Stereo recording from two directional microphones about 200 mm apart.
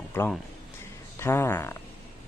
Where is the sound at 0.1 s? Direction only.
10° left (ahead or behind).